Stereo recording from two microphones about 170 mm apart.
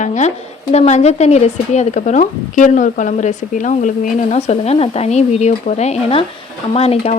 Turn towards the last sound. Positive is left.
turn(degrees=35)  # may be behind; listen again after turning